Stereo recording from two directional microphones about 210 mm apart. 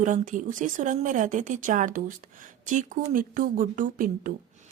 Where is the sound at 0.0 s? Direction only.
40° right (ahead or behind).